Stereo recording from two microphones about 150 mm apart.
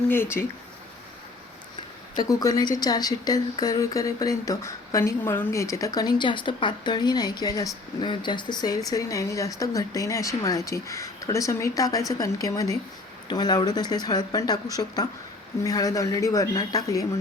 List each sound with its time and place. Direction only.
0.1 s speech: 15° left (ahead or behind)
2.1 s speech: 25° left (ahead or behind)